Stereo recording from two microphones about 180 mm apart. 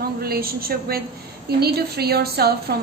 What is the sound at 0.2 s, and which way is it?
A woman's voice, 55° right (ahead or behind).